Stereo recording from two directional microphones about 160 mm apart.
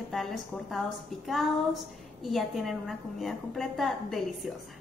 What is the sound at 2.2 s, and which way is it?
A woman's voice, centre (ahead or behind).